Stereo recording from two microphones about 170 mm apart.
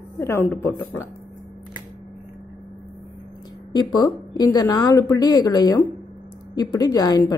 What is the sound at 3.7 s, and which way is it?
A woman's voice, 25° left (ahead or behind).